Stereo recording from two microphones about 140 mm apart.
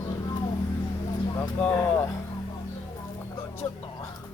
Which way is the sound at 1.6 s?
10° left (ahead or behind).